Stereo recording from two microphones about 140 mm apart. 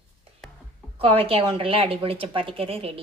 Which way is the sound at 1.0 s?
40° right (ahead or behind).